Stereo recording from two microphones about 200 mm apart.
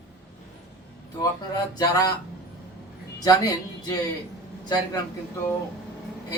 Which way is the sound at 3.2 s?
20° left (ahead or behind).